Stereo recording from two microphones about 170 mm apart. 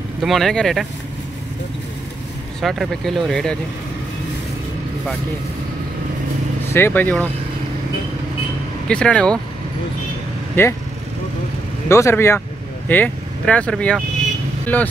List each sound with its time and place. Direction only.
0.2 s speech: centre (ahead or behind)
2.6 s speech: centre (ahead or behind)
6.7 s speech: 10° left (ahead or behind)
8.8 s speech: 5° left (ahead or behind)
10.6 s speech: 15° left (ahead or behind)
11.9 s speech: 15° left (ahead or behind)